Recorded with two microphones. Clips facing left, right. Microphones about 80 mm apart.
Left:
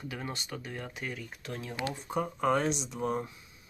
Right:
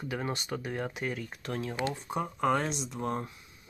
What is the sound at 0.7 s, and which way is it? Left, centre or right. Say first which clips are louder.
Speech: right 6 dB; right.